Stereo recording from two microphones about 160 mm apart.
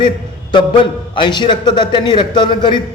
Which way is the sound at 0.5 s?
30° left (ahead or behind).